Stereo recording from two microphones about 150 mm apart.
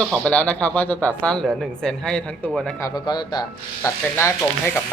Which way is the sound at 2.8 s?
25° left (ahead or behind).